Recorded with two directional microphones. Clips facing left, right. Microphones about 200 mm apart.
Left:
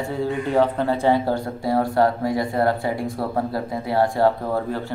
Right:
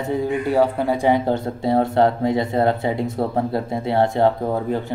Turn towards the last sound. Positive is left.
turn(degrees=-20)  # may be behind; listen again after turning